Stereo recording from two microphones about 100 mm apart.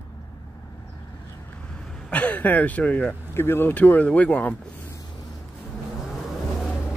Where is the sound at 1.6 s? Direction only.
5° left (ahead or behind).